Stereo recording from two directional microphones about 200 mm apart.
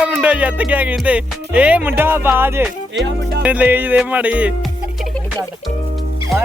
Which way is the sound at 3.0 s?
65° right (ahead or behind).